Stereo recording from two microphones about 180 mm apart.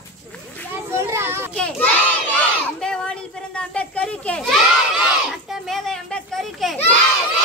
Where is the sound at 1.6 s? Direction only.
5° left (ahead or behind).